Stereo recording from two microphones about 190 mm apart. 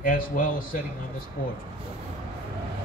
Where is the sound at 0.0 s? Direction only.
45° left (ahead or behind).